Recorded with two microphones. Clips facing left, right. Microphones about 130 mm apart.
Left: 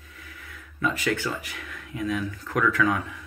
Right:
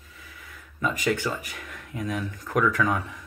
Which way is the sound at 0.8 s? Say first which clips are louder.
Even; 15° right (ahead or behind).